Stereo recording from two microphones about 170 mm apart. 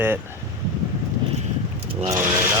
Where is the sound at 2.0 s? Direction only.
20° right (ahead or behind).